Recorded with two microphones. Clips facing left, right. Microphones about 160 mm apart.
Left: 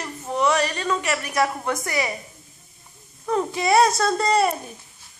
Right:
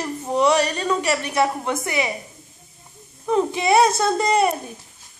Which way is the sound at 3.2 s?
20° right (ahead or behind).